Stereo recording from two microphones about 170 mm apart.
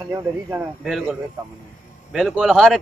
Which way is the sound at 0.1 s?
15° right (ahead or behind).